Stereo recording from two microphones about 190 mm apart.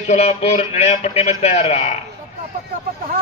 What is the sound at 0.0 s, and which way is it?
A man's voice, 35° left (ahead or behind).